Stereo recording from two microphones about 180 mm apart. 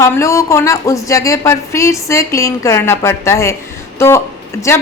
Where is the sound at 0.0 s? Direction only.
15° left (ahead or behind).